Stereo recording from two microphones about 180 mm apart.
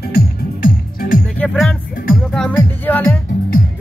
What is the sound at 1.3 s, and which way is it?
Music, 5° left (ahead or behind).